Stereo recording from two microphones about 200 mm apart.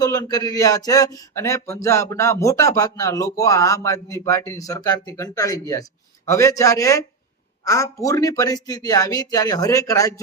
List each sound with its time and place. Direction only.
0.0 s speech: 20° left (ahead or behind)